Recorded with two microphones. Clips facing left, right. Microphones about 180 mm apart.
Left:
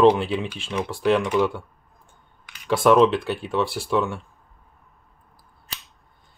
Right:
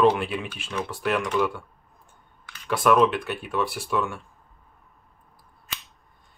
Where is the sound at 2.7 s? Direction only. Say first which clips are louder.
Left 4 dB; 30° left (ahead or behind).